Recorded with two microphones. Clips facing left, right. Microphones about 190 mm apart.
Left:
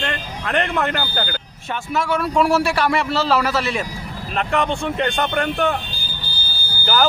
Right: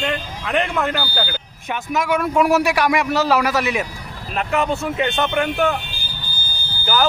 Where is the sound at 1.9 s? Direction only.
15° right (ahead or behind).